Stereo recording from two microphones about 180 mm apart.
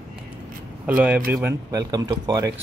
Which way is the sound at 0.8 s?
10° right (ahead or behind).